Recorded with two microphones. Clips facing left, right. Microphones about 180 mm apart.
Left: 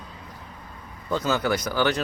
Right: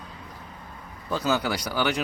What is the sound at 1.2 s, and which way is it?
Speech, 15° right (ahead or behind).